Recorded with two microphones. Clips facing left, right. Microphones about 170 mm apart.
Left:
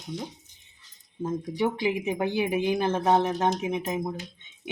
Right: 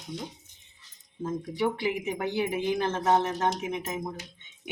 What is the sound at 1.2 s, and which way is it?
Speech, 15° left (ahead or behind).